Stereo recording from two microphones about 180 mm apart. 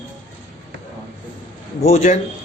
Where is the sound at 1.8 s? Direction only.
35° left (ahead or behind).